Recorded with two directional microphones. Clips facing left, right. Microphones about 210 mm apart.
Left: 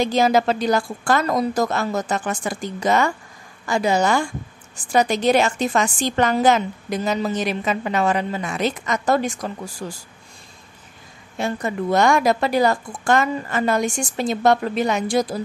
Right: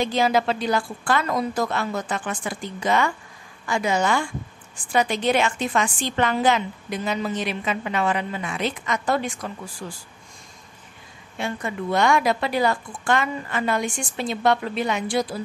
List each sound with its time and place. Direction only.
0.0 s a woman's voice: 45° left (ahead or behind)
11.3 s a woman's voice: 40° left (ahead or behind)